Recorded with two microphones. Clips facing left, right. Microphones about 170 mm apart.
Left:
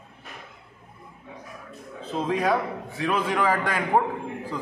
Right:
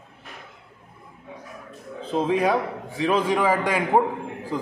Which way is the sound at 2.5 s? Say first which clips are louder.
Right 1 dB; 20° right (ahead or behind).